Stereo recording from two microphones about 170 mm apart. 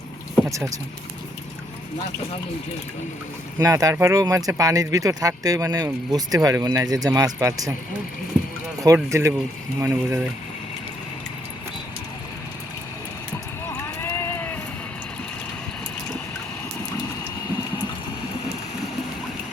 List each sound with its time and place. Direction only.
0.4 s speech: 20° right (ahead or behind)
3.6 s speech: 20° right (ahead or behind)
8.8 s speech: 20° right (ahead or behind)
13.7 s a sound: 15° left (ahead or behind)